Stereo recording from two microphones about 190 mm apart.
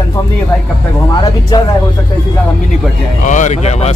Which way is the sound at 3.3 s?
40° left (ahead or behind).